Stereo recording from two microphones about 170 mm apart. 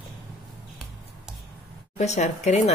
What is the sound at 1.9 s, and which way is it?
Speech, 40° left (ahead or behind).